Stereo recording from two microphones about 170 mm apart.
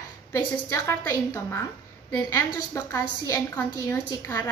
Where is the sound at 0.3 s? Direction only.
15° left (ahead or behind).